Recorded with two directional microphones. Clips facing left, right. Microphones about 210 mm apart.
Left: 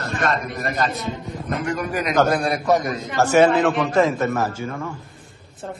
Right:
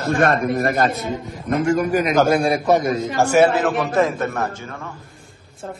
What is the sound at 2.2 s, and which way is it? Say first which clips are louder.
Speech: right 4 dB; 25° right (ahead or behind).